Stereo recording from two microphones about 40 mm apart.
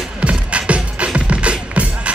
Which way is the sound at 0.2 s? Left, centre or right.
Right.